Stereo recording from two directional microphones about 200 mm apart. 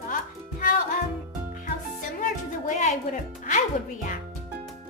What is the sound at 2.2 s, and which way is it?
Music, 40° left (ahead or behind).